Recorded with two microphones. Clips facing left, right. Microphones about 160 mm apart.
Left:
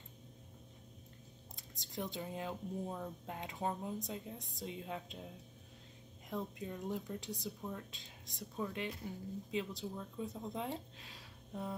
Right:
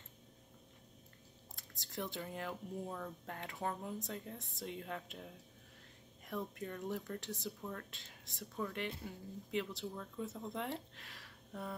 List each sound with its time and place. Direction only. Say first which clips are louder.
1.6 s speech: left 1 dB; 15° left (ahead or behind)